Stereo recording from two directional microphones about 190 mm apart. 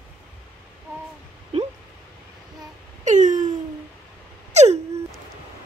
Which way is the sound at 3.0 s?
40° right (ahead or behind).